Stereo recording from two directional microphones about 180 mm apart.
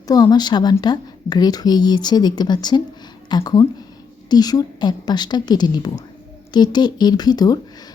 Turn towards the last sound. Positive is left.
turn(degrees=20)  # may be behind; listen again after turning